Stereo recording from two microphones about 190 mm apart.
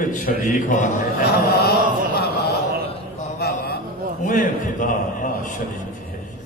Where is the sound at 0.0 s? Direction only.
45° left (ahead or behind).